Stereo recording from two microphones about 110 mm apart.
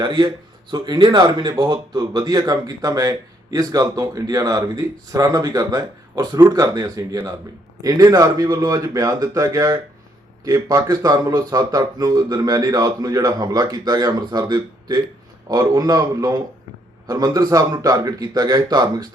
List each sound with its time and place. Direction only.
0.0 s speech: 45° right (ahead or behind)